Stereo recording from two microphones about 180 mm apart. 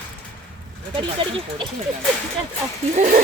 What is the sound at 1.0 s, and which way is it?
Speech, 25° right (ahead or behind).